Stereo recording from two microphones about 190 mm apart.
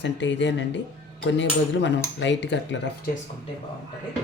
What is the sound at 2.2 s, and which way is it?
Speech, 70° left (ahead or behind).